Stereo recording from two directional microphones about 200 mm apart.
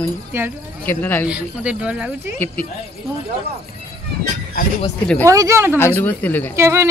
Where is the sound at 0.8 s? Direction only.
10° left (ahead or behind).